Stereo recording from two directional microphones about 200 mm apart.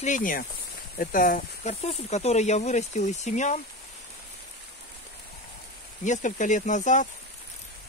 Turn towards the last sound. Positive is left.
turn(degrees=40)  # may be behind; listen again after turning